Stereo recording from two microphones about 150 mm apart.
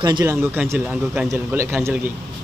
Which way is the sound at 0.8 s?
5° right (ahead or behind).